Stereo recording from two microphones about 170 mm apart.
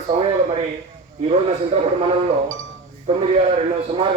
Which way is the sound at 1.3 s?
35° right (ahead or behind).